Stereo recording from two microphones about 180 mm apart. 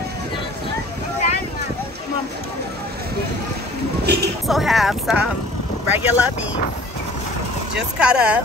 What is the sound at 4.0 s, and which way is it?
Music, 65° right (ahead or behind).